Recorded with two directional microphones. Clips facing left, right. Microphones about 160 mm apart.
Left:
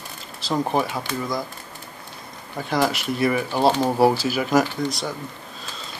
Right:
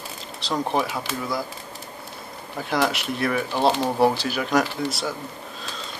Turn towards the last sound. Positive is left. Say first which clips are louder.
# left 1 dB
turn(degrees=-5)  # may be behind; listen again after turning